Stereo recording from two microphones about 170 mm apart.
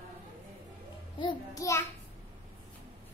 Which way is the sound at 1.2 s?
25° left (ahead or behind).